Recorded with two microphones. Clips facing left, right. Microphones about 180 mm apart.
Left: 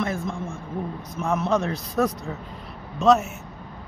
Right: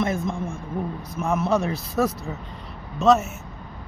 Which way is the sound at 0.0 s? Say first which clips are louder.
Right 3 dB; 20° right (ahead or behind).